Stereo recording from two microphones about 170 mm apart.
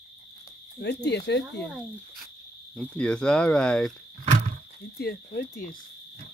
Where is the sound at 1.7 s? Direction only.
Centre (ahead or behind).